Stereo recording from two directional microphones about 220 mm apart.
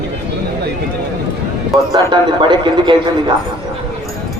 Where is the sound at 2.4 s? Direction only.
20° right (ahead or behind).